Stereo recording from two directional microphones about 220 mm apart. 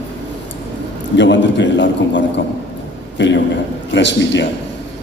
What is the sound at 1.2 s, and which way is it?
A man's voice, 55° left (ahead or behind).